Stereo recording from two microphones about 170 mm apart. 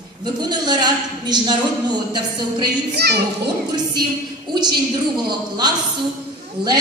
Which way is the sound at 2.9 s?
75° right (ahead or behind).